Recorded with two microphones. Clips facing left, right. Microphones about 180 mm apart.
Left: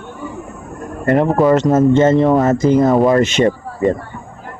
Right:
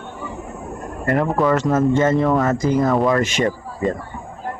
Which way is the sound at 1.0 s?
25° left (ahead or behind).